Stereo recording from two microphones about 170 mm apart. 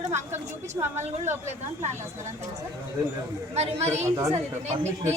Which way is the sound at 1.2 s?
45° right (ahead or behind).